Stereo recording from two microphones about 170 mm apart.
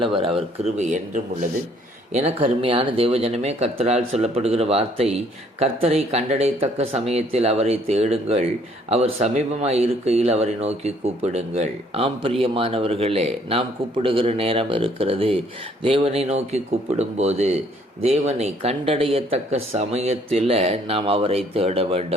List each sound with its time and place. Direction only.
0.0 s speech: 30° right (ahead or behind)
2.1 s speech: 35° right (ahead or behind)